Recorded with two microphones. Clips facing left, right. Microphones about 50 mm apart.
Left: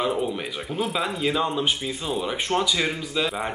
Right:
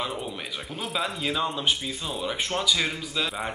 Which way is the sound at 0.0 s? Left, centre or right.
Centre.